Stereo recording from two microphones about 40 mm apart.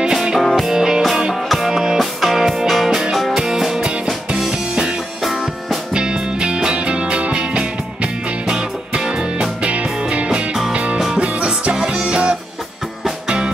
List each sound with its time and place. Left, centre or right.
0.0 s music: centre
1.3 s music: centre
1.7 s music: centre
3.9 s music: right